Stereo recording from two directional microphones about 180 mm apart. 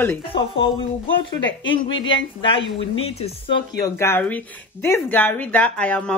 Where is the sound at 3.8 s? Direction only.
15° left (ahead or behind).